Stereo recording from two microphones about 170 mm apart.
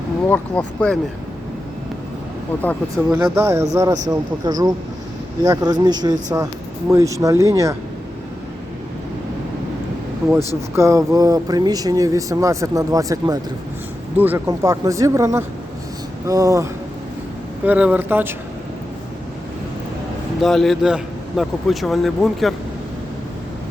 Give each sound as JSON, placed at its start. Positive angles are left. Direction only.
{"t": 0.3, "sound": "speech", "side_deg": 5}
{"t": 3.3, "sound": "speech", "side_deg": -15}
{"t": 10.8, "sound": "speech", "side_deg": -20}
{"t": 17.7, "sound": "speech", "side_deg": -10}
{"t": 20.4, "sound": "a man's voice", "side_deg": 0}